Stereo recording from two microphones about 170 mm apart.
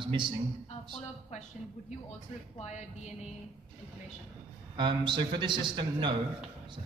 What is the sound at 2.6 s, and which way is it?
Speech, 40° left (ahead or behind).